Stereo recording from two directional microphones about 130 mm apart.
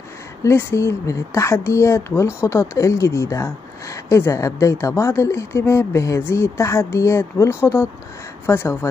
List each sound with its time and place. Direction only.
0.4 s speech: 20° left (ahead or behind)